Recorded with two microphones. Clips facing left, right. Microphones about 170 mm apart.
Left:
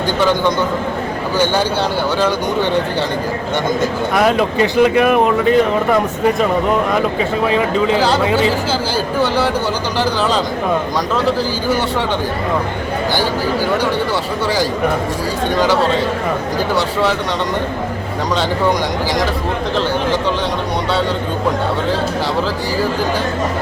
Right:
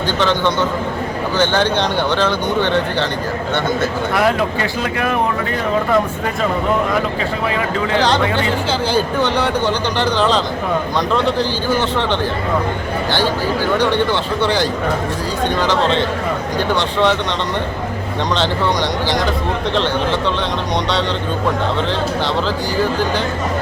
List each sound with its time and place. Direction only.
0.2 s speech: 10° left (ahead or behind)
2.1 s speech: 10° left (ahead or behind)
3.8 s speech: 20° left (ahead or behind)
7.5 s speech: 20° left (ahead or behind)
7.9 s speech: 5° left (ahead or behind)
14.4 s speech: 5° left (ahead or behind)